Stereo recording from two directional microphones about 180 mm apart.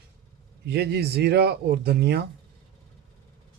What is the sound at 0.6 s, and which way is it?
Speech, 65° right (ahead or behind).